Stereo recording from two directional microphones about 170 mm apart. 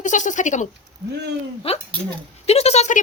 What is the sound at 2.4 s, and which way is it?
Speech, 40° left (ahead or behind).